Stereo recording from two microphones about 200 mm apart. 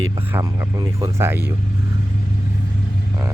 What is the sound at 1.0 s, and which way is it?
Speech, 10° right (ahead or behind).